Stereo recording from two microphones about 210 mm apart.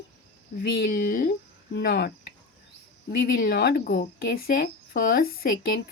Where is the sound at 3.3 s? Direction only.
50° left (ahead or behind).